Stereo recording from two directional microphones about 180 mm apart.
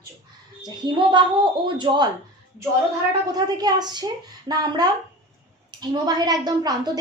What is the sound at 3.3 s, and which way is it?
A woman's voice, 20° right (ahead or behind).